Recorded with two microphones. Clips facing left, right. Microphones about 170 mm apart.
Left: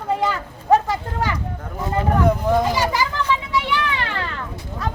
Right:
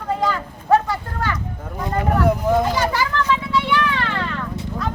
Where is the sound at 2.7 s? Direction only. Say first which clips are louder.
Even; 10° left (ahead or behind).